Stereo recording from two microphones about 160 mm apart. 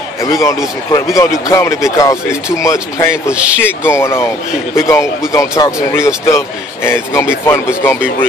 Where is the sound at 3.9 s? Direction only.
15° left (ahead or behind).